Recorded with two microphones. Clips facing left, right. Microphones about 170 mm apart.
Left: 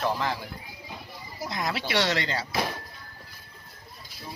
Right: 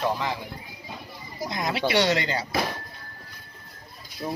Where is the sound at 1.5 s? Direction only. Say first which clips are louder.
Right 4 dB; centre (ahead or behind).